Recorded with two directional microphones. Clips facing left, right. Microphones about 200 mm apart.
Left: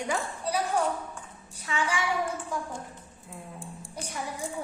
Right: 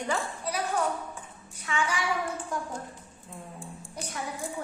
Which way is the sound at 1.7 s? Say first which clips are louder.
Right 1 dB; 30° left (ahead or behind).